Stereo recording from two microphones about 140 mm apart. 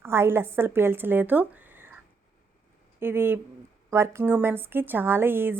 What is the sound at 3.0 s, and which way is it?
A woman's voice, 15° right (ahead or behind).